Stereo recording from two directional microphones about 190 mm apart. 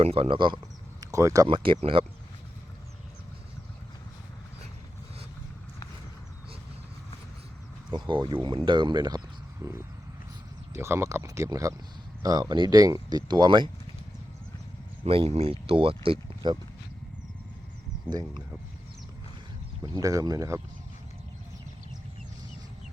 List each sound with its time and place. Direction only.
0.0 s speech: 30° right (ahead or behind)
7.9 s speech: 25° right (ahead or behind)
15.0 s speech: 30° right (ahead or behind)
18.1 s speech: 20° right (ahead or behind)
19.8 s speech: 20° right (ahead or behind)